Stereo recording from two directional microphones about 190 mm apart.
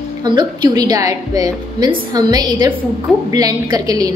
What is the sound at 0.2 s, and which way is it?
A woman's voice, 20° right (ahead or behind).